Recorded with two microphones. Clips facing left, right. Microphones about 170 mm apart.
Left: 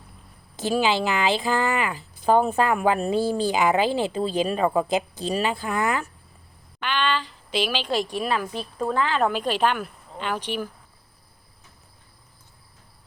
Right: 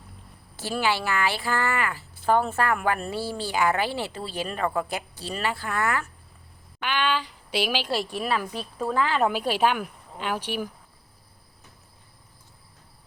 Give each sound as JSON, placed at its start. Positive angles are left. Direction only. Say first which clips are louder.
{"t": 0.5, "sound": "speech", "louder": "left 4 dB", "side_deg": 15}
{"t": 6.8, "sound": "a woman's voice", "louder": "left 1 dB", "side_deg": -10}